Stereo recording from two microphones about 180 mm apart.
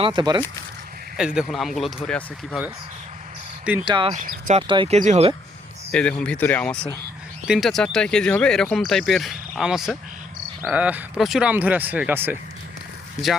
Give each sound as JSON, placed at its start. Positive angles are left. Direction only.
{"t": 0.0, "sound": "speech", "side_deg": -25}
{"t": 1.1, "sound": "speech", "side_deg": -5}
{"t": 3.8, "sound": "speech", "side_deg": -25}
{"t": 4.1, "sound": "speech", "side_deg": -45}
{"t": 4.6, "sound": "speech", "side_deg": -30}
{"t": 4.9, "sound": "speech", "side_deg": -40}
{"t": 5.9, "sound": "speech", "side_deg": 5}
{"t": 7.4, "sound": "speech", "side_deg": 0}
{"t": 13.2, "sound": "speech", "side_deg": 40}